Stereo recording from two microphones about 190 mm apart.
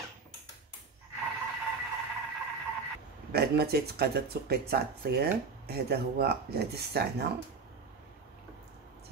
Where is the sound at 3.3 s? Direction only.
55° right (ahead or behind).